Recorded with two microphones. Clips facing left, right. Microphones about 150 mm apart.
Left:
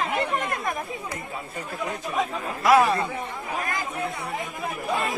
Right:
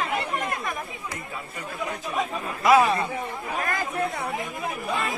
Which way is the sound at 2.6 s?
15° right (ahead or behind).